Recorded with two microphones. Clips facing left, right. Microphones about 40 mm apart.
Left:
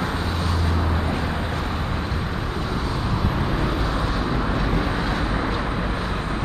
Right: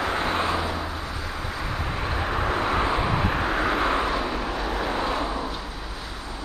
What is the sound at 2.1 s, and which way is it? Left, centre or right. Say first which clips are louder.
Vehicle: right 2 dB; right.